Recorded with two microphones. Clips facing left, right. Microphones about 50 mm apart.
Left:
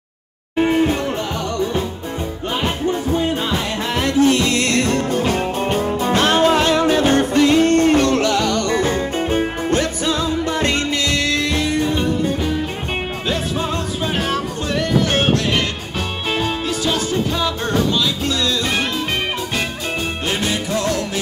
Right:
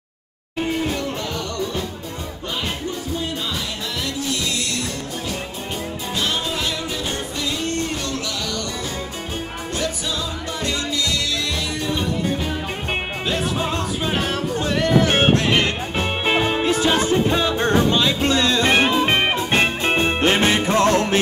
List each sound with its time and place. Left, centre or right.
0.6 s music: left
2.6 s music: left
15.0 s music: right